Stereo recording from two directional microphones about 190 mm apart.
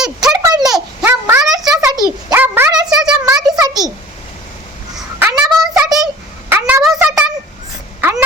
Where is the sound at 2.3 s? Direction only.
10° right (ahead or behind).